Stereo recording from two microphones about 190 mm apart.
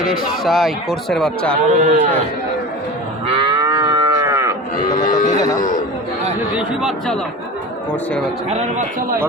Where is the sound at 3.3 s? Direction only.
25° right (ahead or behind).